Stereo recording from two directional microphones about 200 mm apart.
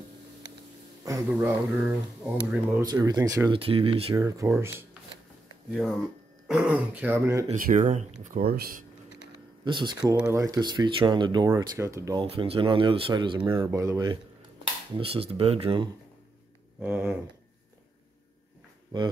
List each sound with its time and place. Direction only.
1.3 s speech: 10° right (ahead or behind); by 4.2 s 30° right (ahead or behind)
4.2 s speech: 15° right (ahead or behind)
5.7 s speech: centre (ahead or behind)
7.4 s speech: 40° right (ahead or behind)
9.7 s speech: 25° right (ahead or behind)
12.2 s speech: 25° right (ahead or behind)
13.7 s speech: 15° right (ahead or behind)
15.0 s speech: 30° right (ahead or behind)
16.8 s speech: 10° right (ahead or behind)